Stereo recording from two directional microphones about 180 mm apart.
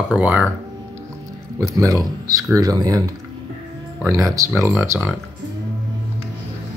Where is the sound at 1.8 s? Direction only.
20° right (ahead or behind).